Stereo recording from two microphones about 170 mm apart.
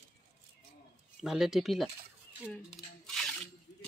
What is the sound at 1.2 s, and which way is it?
Speech, centre (ahead or behind).